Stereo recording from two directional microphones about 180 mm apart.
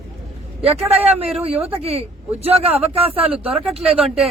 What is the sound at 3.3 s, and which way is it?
Speech, centre (ahead or behind).